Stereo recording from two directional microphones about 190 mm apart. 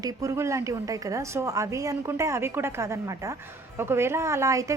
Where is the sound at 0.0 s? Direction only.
15° right (ahead or behind).